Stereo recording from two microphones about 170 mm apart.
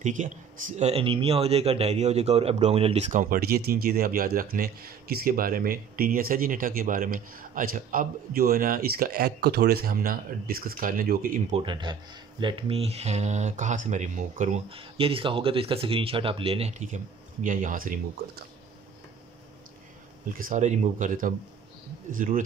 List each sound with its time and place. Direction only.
0.0 s speech: 50° right (ahead or behind)
11.5 s speech: 30° right (ahead or behind); by 18.4 s 55° right (ahead or behind)
20.3 s speech: 50° right (ahead or behind)